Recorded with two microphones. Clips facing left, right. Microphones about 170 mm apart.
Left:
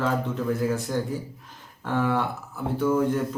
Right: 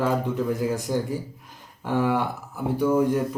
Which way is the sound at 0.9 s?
15° right (ahead or behind).